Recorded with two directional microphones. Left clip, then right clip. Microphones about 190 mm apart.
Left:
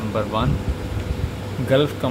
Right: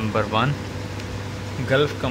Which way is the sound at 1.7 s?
10° left (ahead or behind).